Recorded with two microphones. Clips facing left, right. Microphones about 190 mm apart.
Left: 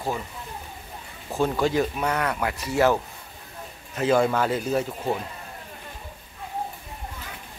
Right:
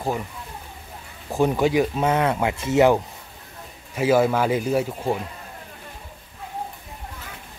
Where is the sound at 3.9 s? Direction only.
10° right (ahead or behind).